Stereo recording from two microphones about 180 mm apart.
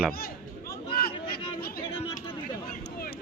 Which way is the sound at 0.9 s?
60° left (ahead or behind).